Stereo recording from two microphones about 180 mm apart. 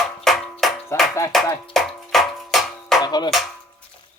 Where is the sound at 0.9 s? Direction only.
15° left (ahead or behind).